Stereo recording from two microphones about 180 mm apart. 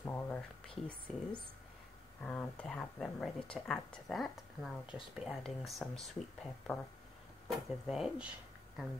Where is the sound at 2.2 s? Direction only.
10° left (ahead or behind).